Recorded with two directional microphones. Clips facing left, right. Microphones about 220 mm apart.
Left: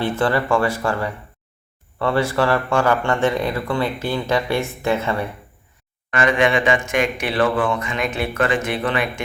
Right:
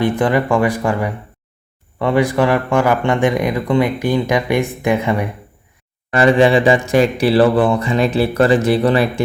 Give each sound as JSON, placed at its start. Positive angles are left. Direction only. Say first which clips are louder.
{"t": 0.0, "sound": "speech", "louder": "right 4 dB", "side_deg": -15}
{"t": 6.1, "sound": "speech", "louder": "right 6 dB", "side_deg": -35}